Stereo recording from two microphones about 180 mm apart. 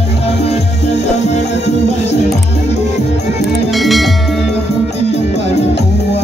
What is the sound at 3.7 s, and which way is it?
Music, centre (ahead or behind).